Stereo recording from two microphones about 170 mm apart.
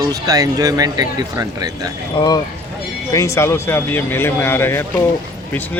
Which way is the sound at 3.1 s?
20° left (ahead or behind).